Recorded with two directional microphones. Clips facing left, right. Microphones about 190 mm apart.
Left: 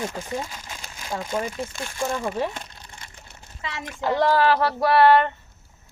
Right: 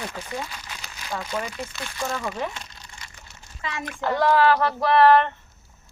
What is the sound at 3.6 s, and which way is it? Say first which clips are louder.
Speech: even; 25° left (ahead or behind).